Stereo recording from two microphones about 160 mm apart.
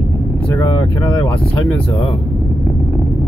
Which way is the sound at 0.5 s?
20° left (ahead or behind).